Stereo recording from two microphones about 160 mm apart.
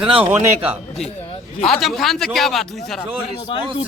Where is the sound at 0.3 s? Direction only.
10° right (ahead or behind).